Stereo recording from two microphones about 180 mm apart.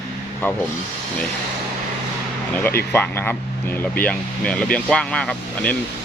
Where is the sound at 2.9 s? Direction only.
10° left (ahead or behind).